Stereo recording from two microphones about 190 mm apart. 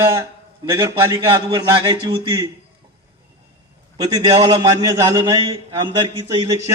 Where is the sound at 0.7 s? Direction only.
15° right (ahead or behind).